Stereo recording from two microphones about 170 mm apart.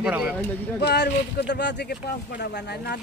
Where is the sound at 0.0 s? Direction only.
5° right (ahead or behind).